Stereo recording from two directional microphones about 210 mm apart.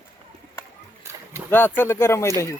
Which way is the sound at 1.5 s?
10° left (ahead or behind).